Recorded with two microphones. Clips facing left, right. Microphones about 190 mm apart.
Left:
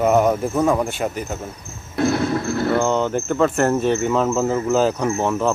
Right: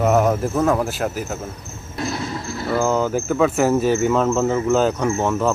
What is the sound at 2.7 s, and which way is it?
Cricket, 5° right (ahead or behind).